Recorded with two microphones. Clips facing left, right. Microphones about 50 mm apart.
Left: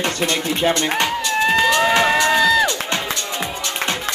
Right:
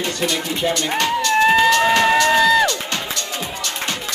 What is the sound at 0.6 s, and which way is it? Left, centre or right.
Speech, left.